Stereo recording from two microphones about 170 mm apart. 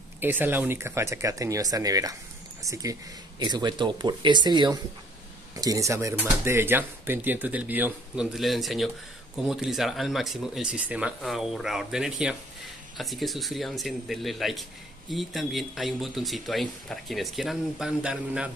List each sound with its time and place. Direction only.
0.2 s speech: 10° right (ahead or behind)